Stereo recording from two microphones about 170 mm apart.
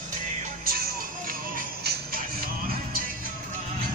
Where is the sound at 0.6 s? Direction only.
60° right (ahead or behind).